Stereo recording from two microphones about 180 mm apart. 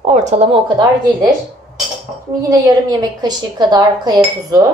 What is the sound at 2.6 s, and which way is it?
Speech, 20° right (ahead or behind).